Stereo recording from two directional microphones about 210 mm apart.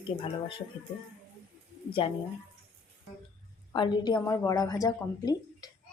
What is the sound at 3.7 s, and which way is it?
Speech, 20° left (ahead or behind).